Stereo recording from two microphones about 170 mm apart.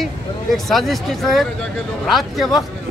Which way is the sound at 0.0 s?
Centre (ahead or behind).